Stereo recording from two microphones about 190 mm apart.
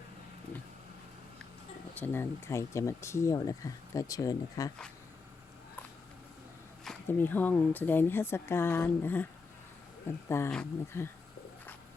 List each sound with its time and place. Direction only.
2.0 s speech: 15° left (ahead or behind)
6.8 s speech: 5° left (ahead or behind)
10.2 s speech: 15° left (ahead or behind)